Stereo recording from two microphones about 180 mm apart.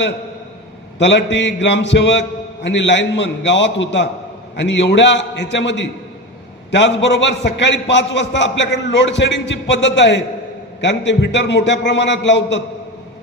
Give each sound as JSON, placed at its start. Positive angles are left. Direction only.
{"t": 0.9, "sound": "a man's voice", "side_deg": 85}